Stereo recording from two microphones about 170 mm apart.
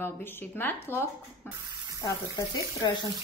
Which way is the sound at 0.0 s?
15° left (ahead or behind).